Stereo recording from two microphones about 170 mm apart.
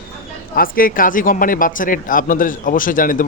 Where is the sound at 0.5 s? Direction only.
55° left (ahead or behind).